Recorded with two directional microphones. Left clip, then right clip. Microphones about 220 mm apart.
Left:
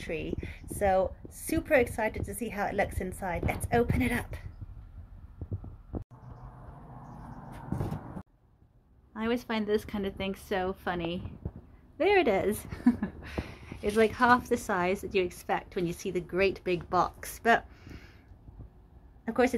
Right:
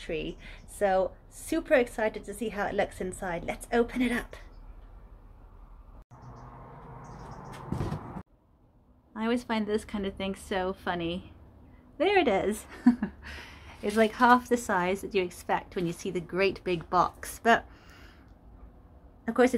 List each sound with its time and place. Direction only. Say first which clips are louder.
0.0 s a woman's voice: right 1 dB; 10° left (ahead or behind)
9.1 s a woman's voice: right 1 dB; 10° left (ahead or behind)
19.2 s speech: right 3 dB; 5° left (ahead or behind)